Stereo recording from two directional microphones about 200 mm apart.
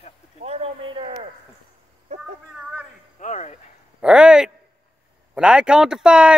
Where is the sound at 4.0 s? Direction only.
5° right (ahead or behind).